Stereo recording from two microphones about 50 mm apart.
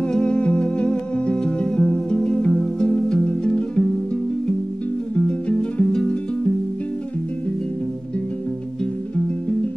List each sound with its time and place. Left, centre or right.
0.0 s music: centre